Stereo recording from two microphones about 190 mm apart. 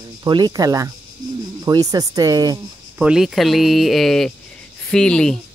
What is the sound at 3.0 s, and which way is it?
Speech, 5° right (ahead or behind).